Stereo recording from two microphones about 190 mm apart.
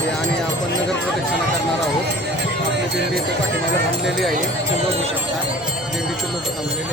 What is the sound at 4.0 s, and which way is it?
Speech, centre (ahead or behind).